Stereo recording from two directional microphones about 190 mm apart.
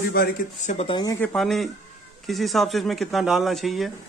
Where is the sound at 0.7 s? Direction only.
25° left (ahead or behind).